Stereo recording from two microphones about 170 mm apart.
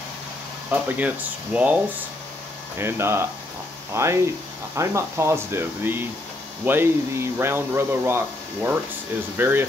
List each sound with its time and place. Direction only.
0.7 s speech: 10° right (ahead or behind)
2.8 s speech: 15° right (ahead or behind)
9.4 s speech: 10° right (ahead or behind)